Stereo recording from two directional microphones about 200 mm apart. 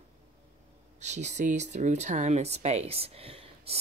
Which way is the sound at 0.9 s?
35° right (ahead or behind).